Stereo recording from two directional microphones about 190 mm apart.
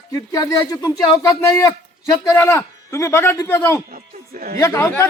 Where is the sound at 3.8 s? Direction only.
50° right (ahead or behind).